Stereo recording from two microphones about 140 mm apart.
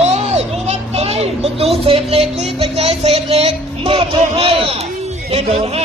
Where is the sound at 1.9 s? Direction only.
45° right (ahead or behind).